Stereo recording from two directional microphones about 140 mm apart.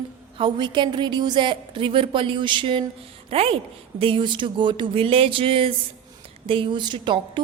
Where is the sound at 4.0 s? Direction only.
40° right (ahead or behind).